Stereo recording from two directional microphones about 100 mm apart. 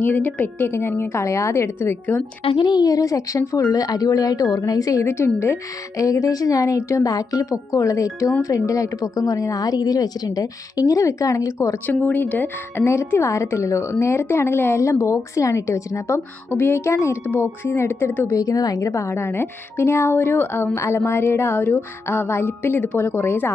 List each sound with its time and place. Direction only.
0.0 s speech: 15° left (ahead or behind)
2.4 s a woman's voice: 50° left (ahead or behind); by 11.7 s 30° left (ahead or behind)
11.8 s speech: 20° left (ahead or behind)
18.3 s a woman's voice: 35° left (ahead or behind)
18.9 s speech: 25° left (ahead or behind)